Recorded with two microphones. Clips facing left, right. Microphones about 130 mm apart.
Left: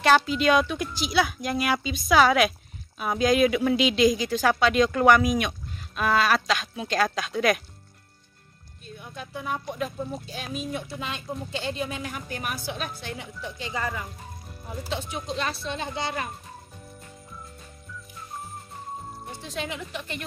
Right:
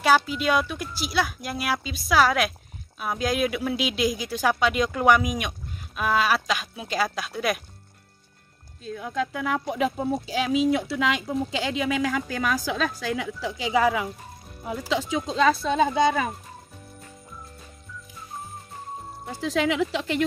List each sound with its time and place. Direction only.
0.0 s speech: 5° right (ahead or behind)
8.9 s speech: 90° right
19.4 s speech: 90° right